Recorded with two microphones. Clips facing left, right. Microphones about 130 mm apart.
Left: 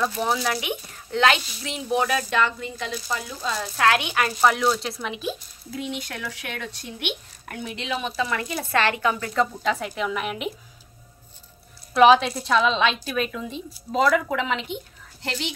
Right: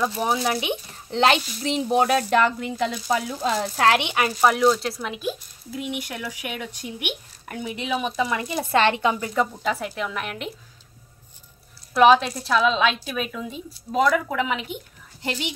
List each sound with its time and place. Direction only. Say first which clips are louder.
0.2 s speech: right 1 dB; 20° right (ahead or behind); by 3.6 s 60° right (ahead or behind)
3.7 s speech: left 1 dB; 30° right (ahead or behind)
4.4 s speech: right 3 dB; 5° right (ahead or behind)
9.6 s a woman's voice: left 1 dB; 5° right (ahead or behind)
11.9 s a woman's voice: even; centre (ahead or behind)